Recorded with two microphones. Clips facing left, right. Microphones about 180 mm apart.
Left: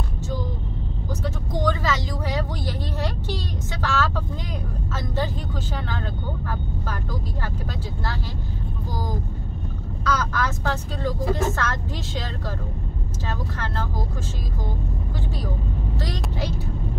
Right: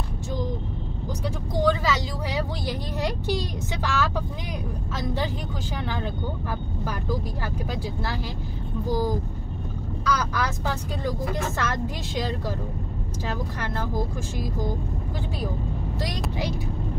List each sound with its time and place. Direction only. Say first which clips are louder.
1.2 s vehicle: right 2 dB; 10° right (ahead or behind)
4.9 s speech: left 1 dB; 10° right (ahead or behind)
10.0 s speech: left 1 dB; 10° right (ahead or behind)